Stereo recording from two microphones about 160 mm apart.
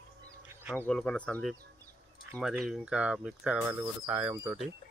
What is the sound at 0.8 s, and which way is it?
Speech, 5° left (ahead or behind).